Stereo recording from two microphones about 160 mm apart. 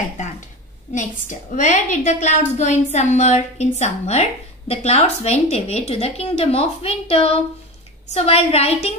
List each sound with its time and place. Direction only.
1.6 s a woman's voice: 50° left (ahead or behind)